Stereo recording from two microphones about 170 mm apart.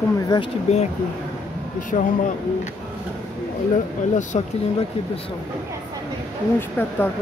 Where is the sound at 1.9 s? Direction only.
45° left (ahead or behind).